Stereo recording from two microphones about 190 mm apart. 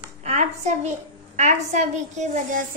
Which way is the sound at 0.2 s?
40° right (ahead or behind).